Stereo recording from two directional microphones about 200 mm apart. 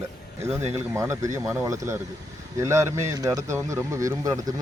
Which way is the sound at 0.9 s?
15° right (ahead or behind).